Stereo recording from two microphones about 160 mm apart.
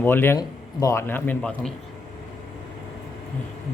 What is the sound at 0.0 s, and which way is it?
Speech, 15° left (ahead or behind).